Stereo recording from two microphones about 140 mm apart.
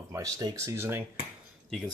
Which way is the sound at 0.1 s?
25° right (ahead or behind).